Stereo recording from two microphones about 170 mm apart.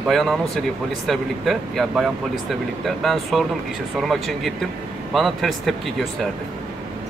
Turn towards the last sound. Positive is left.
turn(degrees=0)  # may be behind; listen again after turning